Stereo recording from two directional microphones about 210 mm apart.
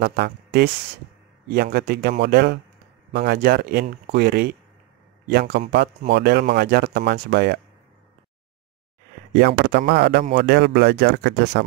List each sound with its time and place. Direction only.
0.0 s speech: 55° right (ahead or behind)
9.3 s speech: 55° right (ahead or behind)